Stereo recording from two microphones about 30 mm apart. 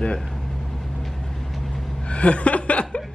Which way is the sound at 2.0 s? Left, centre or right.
Left.